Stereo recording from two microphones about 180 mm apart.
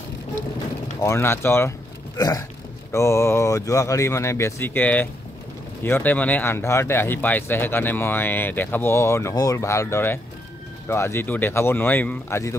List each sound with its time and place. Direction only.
1.0 s speech: 15° left (ahead or behind)